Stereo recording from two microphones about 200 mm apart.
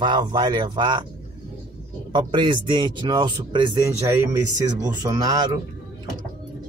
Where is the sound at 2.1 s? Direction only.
25° right (ahead or behind).